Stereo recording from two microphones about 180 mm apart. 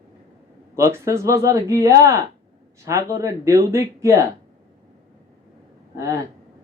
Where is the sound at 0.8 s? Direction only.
15° right (ahead or behind).